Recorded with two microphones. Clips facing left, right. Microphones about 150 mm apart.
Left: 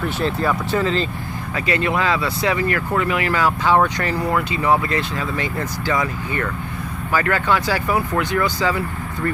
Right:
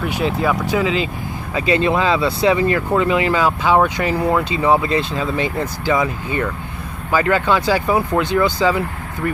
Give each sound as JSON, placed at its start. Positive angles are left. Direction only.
{"t": 0.0, "sound": "speech", "side_deg": -10}
{"t": 1.5, "sound": "speech", "side_deg": -25}
{"t": 4.5, "sound": "speech", "side_deg": -25}